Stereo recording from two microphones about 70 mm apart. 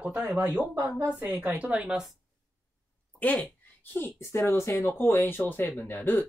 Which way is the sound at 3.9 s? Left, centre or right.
Left.